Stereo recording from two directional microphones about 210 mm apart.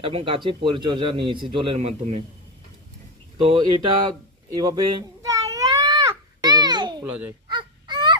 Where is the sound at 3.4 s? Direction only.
25° right (ahead or behind).